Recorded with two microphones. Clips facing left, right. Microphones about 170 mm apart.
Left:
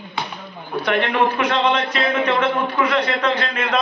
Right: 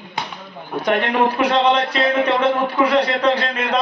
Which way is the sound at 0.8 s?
40° right (ahead or behind).